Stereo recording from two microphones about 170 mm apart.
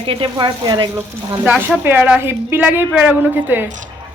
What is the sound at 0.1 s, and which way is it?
Speech, 30° right (ahead or behind).